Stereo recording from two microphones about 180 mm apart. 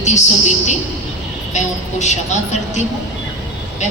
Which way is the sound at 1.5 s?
40° left (ahead or behind).